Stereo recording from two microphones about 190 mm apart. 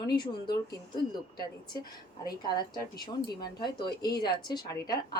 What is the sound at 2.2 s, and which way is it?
A woman's voice, 20° left (ahead or behind).